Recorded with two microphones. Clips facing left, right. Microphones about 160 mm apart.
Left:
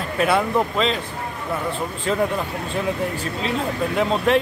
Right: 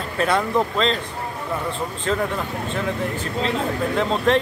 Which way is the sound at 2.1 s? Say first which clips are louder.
Left 1 dB; 15° left (ahead or behind).